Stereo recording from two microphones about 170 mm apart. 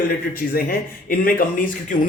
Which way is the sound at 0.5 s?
60° left (ahead or behind).